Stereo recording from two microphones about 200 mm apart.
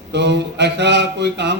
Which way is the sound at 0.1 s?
60° right (ahead or behind).